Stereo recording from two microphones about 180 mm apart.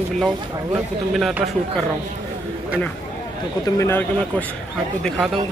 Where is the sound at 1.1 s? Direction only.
Centre (ahead or behind).